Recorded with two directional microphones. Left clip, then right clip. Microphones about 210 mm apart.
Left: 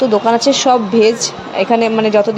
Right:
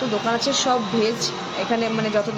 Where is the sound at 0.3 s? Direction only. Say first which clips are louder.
Left 7 dB; 35° left (ahead or behind).